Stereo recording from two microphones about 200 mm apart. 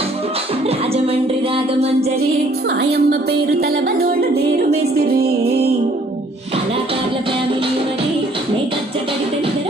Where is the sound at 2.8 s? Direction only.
50° right (ahead or behind).